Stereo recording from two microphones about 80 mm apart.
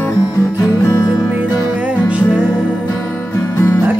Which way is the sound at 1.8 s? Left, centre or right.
Centre.